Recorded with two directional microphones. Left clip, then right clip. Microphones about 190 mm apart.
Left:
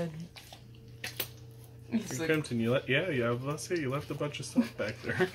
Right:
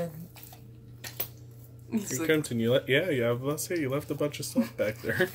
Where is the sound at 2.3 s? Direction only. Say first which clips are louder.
Right 4 dB; 30° right (ahead or behind).